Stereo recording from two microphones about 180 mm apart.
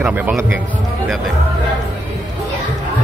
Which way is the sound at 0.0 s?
10° right (ahead or behind).